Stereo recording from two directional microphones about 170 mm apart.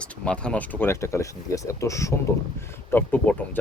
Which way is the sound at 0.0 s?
5° left (ahead or behind).